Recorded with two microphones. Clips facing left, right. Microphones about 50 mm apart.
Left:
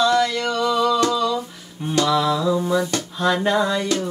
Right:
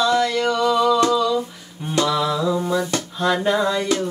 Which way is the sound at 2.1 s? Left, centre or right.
Centre.